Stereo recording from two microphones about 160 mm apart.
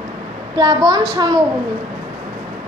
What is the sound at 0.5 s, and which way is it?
Speech, 25° right (ahead or behind).